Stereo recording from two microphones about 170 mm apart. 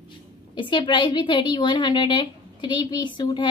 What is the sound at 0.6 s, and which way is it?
A woman's voice, 30° left (ahead or behind).